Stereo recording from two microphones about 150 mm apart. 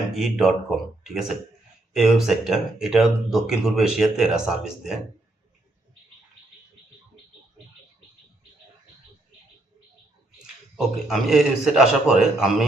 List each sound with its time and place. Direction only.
0.1 s speech: centre (ahead or behind)
10.3 s speech: centre (ahead or behind)